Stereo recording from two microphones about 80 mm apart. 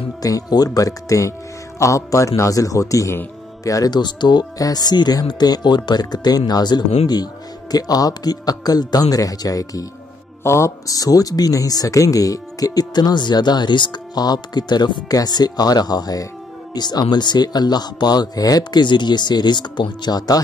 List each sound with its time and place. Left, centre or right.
0.2 s speech: left
3.9 s speech: left
10.4 s speech: left